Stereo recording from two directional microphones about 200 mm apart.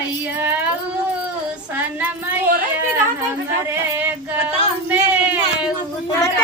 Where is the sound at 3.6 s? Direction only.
10° right (ahead or behind).